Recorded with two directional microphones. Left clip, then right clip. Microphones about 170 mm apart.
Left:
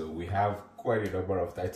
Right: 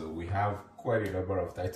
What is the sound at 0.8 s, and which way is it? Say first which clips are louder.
Speech: left 1 dB; 25° left (ahead or behind).